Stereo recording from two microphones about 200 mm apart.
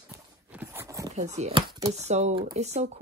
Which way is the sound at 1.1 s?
30° right (ahead or behind).